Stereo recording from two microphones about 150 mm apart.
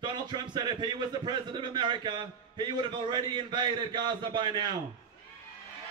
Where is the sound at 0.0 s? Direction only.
30° right (ahead or behind).